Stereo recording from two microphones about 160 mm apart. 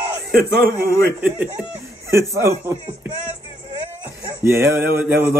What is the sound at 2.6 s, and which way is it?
Speech, 15° right (ahead or behind).